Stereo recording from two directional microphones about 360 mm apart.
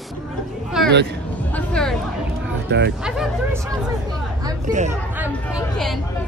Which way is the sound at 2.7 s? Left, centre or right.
Right.